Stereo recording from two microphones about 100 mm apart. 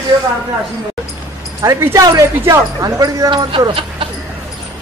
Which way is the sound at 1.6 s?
30° right (ahead or behind).